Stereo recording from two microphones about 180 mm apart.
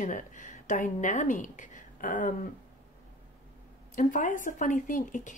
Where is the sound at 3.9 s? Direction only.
45° left (ahead or behind).